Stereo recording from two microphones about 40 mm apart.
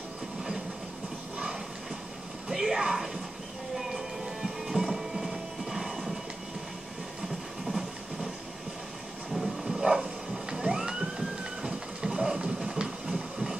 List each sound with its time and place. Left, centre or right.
2.4 s music: centre
3.7 s train: centre
7.6 s train: centre
9.3 s emergency vehicle: centre
12.5 s a sound: centre